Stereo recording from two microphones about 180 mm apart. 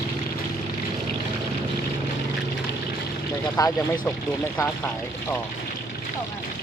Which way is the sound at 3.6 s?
20° left (ahead or behind).